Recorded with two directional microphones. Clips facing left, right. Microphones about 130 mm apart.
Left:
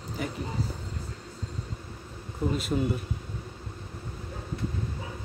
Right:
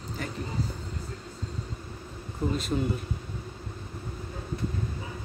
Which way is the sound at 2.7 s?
5° right (ahead or behind).